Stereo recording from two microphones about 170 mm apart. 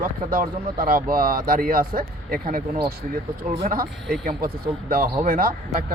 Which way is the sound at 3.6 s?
55° right (ahead or behind).